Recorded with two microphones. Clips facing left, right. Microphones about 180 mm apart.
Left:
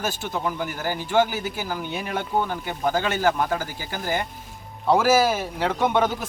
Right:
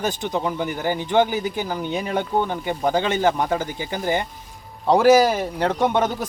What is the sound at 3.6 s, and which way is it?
Speech, 5° left (ahead or behind).